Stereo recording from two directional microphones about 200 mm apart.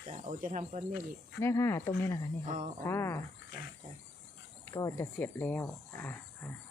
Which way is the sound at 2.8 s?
10° left (ahead or behind).